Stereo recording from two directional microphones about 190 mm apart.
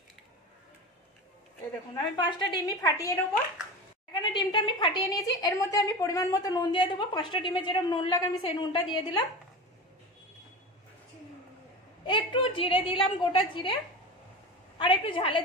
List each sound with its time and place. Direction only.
2.0 s a woman's voice: 25° left (ahead or behind)
12.1 s a woman's voice: 25° left (ahead or behind)
14.8 s a woman's voice: 25° left (ahead or behind)